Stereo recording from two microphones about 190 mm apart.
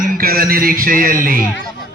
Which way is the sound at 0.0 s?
50° right (ahead or behind).